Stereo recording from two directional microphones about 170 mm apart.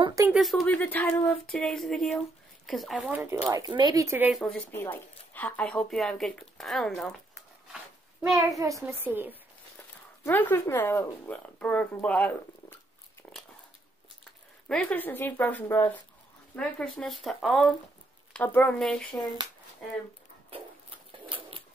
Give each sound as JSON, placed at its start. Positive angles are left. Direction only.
{"t": 0.0, "sound": "speech", "side_deg": -20}
{"t": 0.3, "sound": "speech", "side_deg": 0}
{"t": 3.5, "sound": "speech", "side_deg": -25}
{"t": 4.3, "sound": "speech", "side_deg": 5}
{"t": 8.4, "sound": "a child's voice", "side_deg": -20}
{"t": 10.2, "sound": "speech", "side_deg": 15}
{"t": 14.7, "sound": "speech", "side_deg": 10}
{"t": 21.3, "sound": "a sound", "side_deg": -30}